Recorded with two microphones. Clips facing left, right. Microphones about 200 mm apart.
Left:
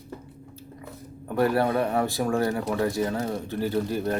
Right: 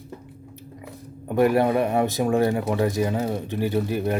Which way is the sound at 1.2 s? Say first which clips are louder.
Right 4 dB; 20° right (ahead or behind).